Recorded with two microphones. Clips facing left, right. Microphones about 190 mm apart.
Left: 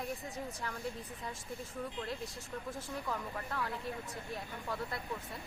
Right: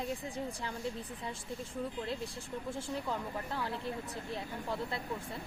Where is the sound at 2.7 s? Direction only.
25° right (ahead or behind).